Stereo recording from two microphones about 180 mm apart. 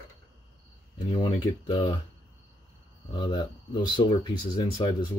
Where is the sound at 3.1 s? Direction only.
25° left (ahead or behind).